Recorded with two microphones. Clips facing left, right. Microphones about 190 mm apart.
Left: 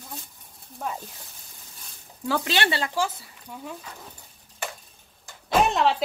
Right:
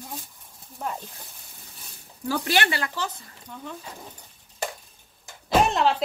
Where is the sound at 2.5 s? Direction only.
25° left (ahead or behind).